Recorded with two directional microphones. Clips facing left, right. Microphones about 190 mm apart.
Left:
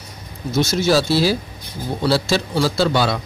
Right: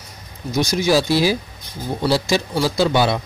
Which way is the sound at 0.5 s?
15° right (ahead or behind).